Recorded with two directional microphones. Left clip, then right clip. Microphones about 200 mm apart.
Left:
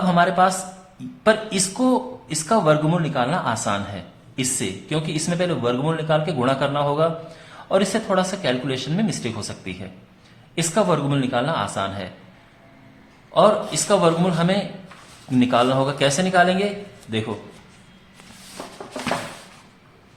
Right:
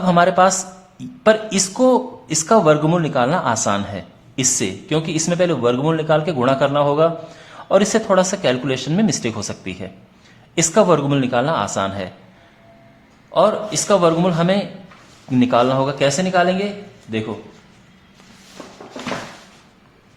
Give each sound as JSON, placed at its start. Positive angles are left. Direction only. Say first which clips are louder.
{"t": 0.0, "sound": "speech", "louder": "right 4 dB", "side_deg": -30}
{"t": 13.3, "sound": "speech", "louder": "right 1 dB", "side_deg": -30}